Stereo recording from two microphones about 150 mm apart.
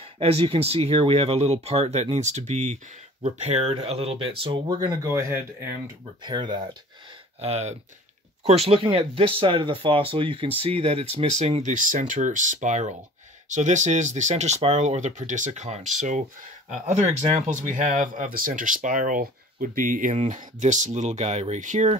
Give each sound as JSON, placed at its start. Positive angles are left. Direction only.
{"t": 0.0, "sound": "speech", "side_deg": -40}
{"t": 4.7, "sound": "speech", "side_deg": -25}
{"t": 6.2, "sound": "speech", "side_deg": -30}
{"t": 7.3, "sound": "speech", "side_deg": -45}